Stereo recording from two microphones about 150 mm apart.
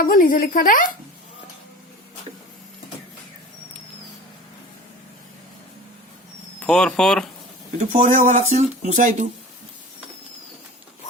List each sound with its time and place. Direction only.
0.0 s speech: 70° left (ahead or behind)
6.6 s speech: 5° left (ahead or behind)
7.8 s speech: 50° right (ahead or behind)